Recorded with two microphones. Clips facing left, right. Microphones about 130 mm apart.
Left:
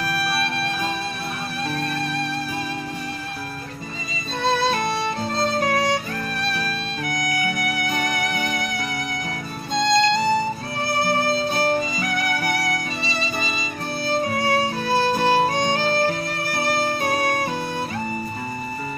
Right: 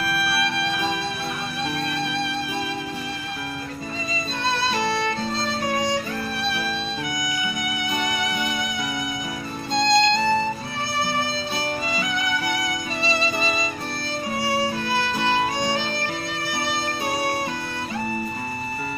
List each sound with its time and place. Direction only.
7.6 s music: 45° left (ahead or behind)
9.8 s music: 10° left (ahead or behind)
11.2 s music: 50° left (ahead or behind)
14.4 s music: 45° left (ahead or behind)
16.6 s music: 50° left (ahead or behind)